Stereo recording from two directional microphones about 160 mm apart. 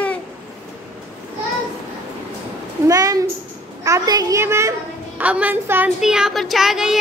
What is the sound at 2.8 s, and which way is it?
A woman's voice, 20° right (ahead or behind).